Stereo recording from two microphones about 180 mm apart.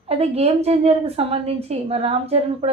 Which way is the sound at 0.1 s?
35° right (ahead or behind).